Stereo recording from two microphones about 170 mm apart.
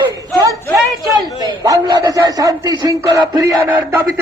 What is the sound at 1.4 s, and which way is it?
A man's voice, 20° right (ahead or behind).